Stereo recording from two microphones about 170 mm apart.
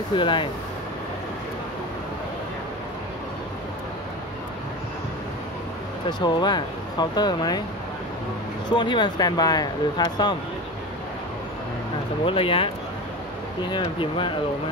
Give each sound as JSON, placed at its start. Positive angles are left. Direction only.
{"t": 0.1, "sound": "speech", "side_deg": 30}
{"t": 6.0, "sound": "speech", "side_deg": 25}
{"t": 8.7, "sound": "speech", "side_deg": 25}
{"t": 12.3, "sound": "speech", "side_deg": 30}